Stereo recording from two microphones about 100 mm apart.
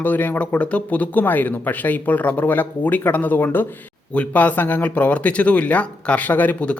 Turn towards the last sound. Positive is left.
turn(degrees=15)  # may be behind; listen again after turning